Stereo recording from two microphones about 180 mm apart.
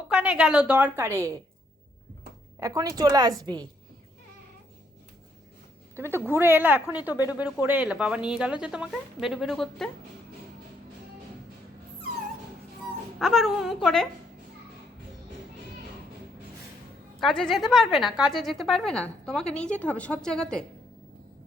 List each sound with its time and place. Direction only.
0.1 s a woman's voice: 5° right (ahead or behind)
2.6 s speech: 20° right (ahead or behind)
6.2 s a woman's voice: 10° right (ahead or behind)
7.1 s speech: 20° left (ahead or behind)
7.3 s a woman's voice: 10° right (ahead or behind)
13.1 s a woman's voice: centre (ahead or behind)
17.2 s a woman's voice: centre (ahead or behind)